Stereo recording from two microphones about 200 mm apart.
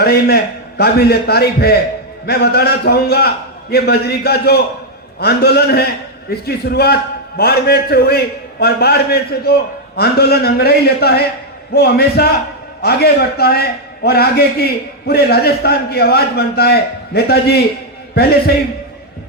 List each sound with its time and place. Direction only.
0.0 s a man's voice: 50° left (ahead or behind)